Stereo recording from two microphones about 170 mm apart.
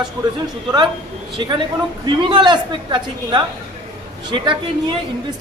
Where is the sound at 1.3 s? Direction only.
30° right (ahead or behind).